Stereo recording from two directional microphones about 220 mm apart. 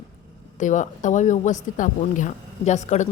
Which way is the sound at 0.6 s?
35° left (ahead or behind).